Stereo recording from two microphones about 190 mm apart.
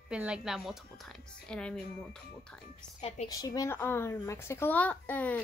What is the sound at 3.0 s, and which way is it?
Speech, 35° left (ahead or behind).